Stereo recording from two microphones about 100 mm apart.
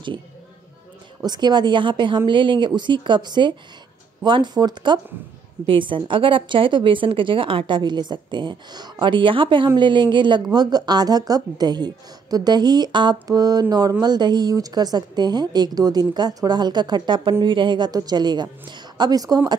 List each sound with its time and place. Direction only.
1.2 s speech: 45° right (ahead or behind)
5.7 s a woman's voice: 55° right (ahead or behind); by 19.5 s 40° right (ahead or behind)